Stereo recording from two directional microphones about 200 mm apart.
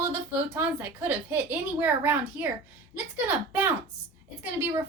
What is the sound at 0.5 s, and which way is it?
A woman's voice, 10° right (ahead or behind).